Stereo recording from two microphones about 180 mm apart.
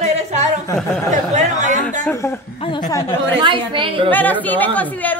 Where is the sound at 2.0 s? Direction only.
15° left (ahead or behind).